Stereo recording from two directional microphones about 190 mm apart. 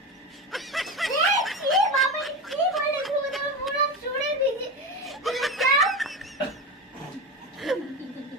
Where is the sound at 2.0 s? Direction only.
Centre (ahead or behind).